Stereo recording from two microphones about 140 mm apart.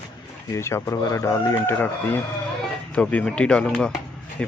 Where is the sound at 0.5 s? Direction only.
20° left (ahead or behind).